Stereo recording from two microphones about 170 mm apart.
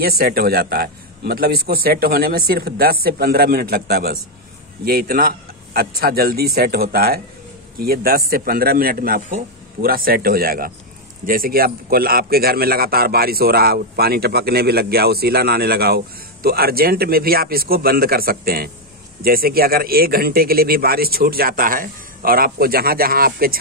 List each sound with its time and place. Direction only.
0.2 s a man's voice: 60° right (ahead or behind)